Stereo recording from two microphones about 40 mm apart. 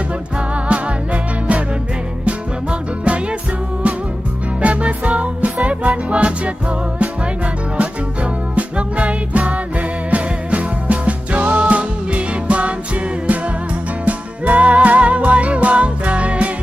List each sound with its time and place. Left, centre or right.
0.3 s music: right
4.6 s music: right